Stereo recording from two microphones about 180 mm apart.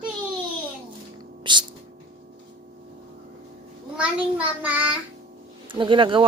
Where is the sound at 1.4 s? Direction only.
25° right (ahead or behind).